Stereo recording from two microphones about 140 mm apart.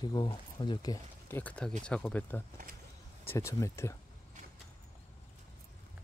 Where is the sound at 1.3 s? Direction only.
15° left (ahead or behind).